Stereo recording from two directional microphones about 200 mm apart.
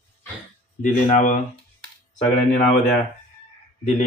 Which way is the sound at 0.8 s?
40° left (ahead or behind).